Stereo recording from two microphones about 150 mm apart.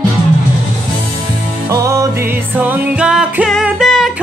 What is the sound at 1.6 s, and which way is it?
Music, 20° right (ahead or behind).